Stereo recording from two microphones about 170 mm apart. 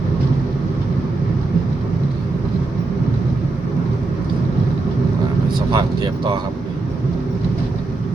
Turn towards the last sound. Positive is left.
turn(degrees=-25)  # may be behind; listen again after turning